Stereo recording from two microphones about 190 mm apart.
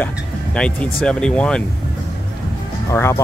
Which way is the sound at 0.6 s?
5° left (ahead or behind).